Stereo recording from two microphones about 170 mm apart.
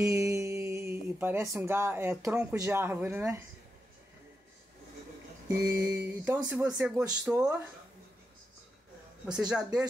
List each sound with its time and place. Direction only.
0.0 s speech: 15° right (ahead or behind)
5.5 s speech: 15° right (ahead or behind)
9.5 s speech: 5° right (ahead or behind)